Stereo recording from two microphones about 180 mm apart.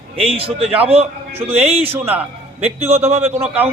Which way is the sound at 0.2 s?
30° right (ahead or behind).